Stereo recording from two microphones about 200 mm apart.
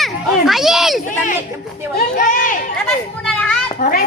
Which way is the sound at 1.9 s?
40° left (ahead or behind).